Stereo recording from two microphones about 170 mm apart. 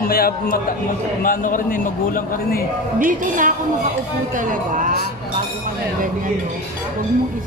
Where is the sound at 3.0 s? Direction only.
50° right (ahead or behind).